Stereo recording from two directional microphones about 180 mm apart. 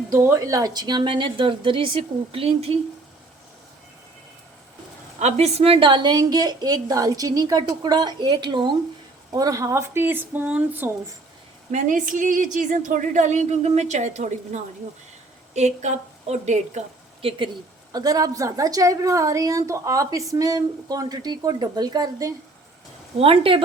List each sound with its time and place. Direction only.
0.1 s a woman's voice: 15° right (ahead or behind); by 2.7 s 35° right (ahead or behind)
5.2 s a woman's voice: 35° right (ahead or behind); by 10.9 s 10° right (ahead or behind)
11.7 s a woman's voice: 45° right (ahead or behind)
17.2 s a woman's voice: 25° right (ahead or behind)